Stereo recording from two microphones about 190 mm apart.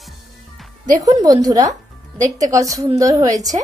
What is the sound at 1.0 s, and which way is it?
A woman's voice, 20° right (ahead or behind).